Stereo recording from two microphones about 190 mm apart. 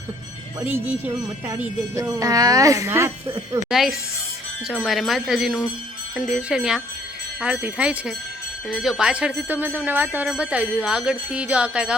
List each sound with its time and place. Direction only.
0.6 s speech: 10° right (ahead or behind)
3.7 s speech: centre (ahead or behind)